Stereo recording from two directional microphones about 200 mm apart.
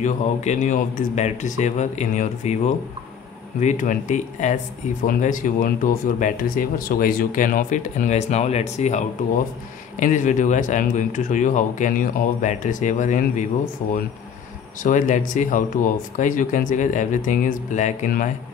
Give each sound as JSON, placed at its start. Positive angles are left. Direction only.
{"t": 0.0, "sound": "speech", "side_deg": 35}